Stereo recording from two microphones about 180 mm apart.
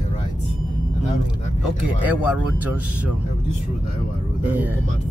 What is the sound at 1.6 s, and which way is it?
Speech, 5° right (ahead or behind).